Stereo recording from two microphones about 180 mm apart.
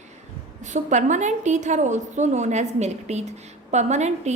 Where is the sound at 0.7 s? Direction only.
40° right (ahead or behind).